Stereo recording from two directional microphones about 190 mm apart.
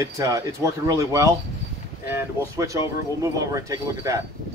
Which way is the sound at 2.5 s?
15° right (ahead or behind).